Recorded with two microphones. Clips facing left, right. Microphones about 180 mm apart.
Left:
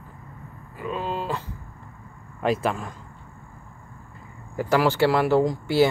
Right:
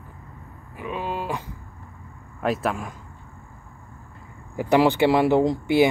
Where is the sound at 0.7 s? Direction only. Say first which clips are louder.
Even; 10° right (ahead or behind).